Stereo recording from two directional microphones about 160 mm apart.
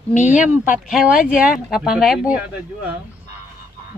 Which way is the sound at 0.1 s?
50° left (ahead or behind).